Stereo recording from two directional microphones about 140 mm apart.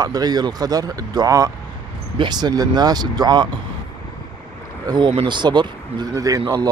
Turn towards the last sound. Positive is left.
turn(degrees=-25)  # may be behind; listen again after turning